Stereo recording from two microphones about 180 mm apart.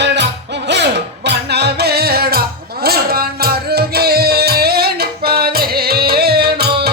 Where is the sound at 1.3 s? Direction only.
65° right (ahead or behind).